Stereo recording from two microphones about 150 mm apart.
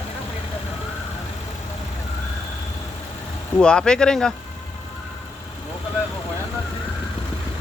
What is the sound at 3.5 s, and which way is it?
Speech, 5° left (ahead or behind).